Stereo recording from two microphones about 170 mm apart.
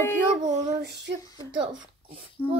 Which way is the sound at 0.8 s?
75° right (ahead or behind).